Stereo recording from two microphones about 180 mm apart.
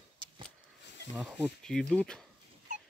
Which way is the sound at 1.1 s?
Centre (ahead or behind).